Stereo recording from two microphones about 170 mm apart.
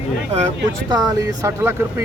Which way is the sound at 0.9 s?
25° right (ahead or behind).